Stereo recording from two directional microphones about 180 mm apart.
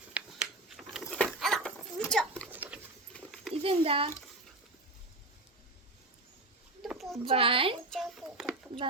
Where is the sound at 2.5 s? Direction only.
10° right (ahead or behind).